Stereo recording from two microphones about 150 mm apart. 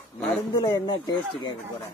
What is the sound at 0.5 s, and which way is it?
Speech, 30° left (ahead or behind).